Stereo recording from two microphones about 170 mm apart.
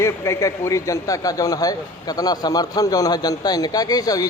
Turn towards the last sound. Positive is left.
turn(degrees=20)  # may be behind; listen again after turning